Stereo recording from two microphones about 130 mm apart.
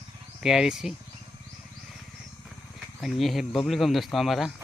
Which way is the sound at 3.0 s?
Centre (ahead or behind).